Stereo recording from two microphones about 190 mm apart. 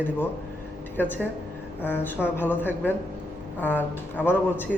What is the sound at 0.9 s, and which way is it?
A man's voice, 10° left (ahead or behind).